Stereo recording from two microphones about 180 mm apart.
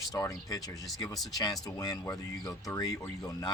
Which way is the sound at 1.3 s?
20° left (ahead or behind).